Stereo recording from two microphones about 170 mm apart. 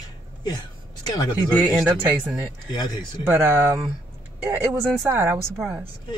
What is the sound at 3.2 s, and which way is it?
Speech, 15° right (ahead or behind).